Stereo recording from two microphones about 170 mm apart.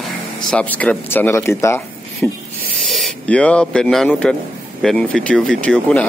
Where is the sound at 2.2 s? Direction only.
Centre (ahead or behind).